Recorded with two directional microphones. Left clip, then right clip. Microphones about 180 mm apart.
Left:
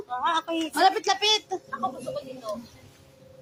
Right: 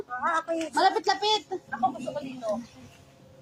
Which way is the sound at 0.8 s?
55° left (ahead or behind).